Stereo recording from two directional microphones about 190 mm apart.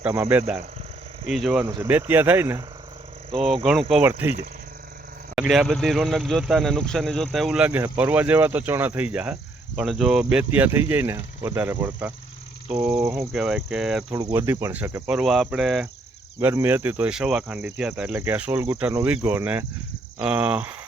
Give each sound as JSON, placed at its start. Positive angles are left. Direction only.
{"t": 0.0, "sound": "speech", "side_deg": -10}
{"t": 1.6, "sound": "speech", "side_deg": -15}
{"t": 3.3, "sound": "speech", "side_deg": 0}
{"t": 5.3, "sound": "speech", "side_deg": 0}
{"t": 13.3, "sound": "speech", "side_deg": 0}
{"t": 14.3, "sound": "speech", "side_deg": -15}